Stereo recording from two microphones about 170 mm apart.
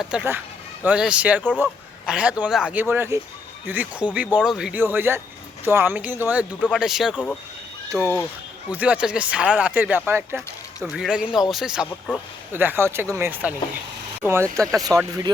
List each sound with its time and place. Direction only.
0.0 s speech: 5° right (ahead or behind)
7.9 s speech: 15° right (ahead or behind)
10.8 s speech: 5° right (ahead or behind); by 15.3 s 20° right (ahead or behind)